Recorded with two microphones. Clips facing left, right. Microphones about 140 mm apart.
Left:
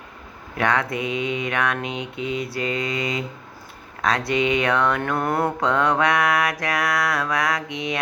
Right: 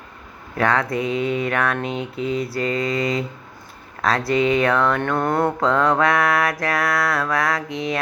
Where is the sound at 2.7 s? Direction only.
20° left (ahead or behind).